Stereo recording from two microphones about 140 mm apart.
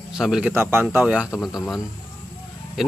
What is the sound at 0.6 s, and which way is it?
Speech, 15° right (ahead or behind).